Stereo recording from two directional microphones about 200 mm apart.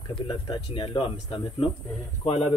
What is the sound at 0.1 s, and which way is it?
Speech, 25° left (ahead or behind).